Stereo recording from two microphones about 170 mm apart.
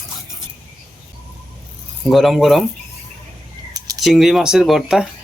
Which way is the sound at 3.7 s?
20° right (ahead or behind).